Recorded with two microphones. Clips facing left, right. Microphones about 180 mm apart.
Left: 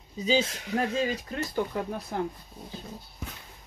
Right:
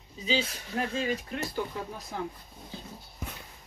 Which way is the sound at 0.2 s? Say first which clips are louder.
Left 5 dB; 45° left (ahead or behind).